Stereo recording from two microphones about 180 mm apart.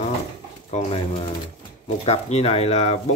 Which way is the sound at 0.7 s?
35° left (ahead or behind).